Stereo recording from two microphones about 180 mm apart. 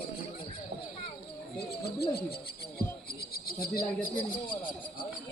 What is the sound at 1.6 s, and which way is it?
Speech, 60° left (ahead or behind).